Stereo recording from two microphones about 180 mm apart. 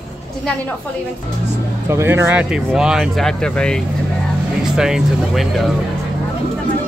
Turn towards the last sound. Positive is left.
turn(degrees=-5)  # may be behind; listen again after turning